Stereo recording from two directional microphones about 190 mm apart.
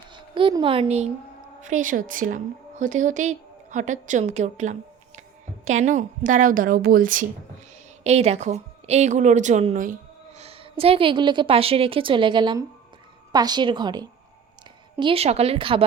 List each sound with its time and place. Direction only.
0.1 s a woman's voice: 25° right (ahead or behind); by 7.3 s 45° right (ahead or behind)
8.0 s a woman's voice: 35° right (ahead or behind)